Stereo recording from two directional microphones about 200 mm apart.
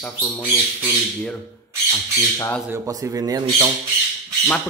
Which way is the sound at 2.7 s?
15° right (ahead or behind).